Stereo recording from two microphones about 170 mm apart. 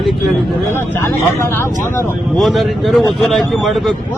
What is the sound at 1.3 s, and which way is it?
Speech, 15° left (ahead or behind).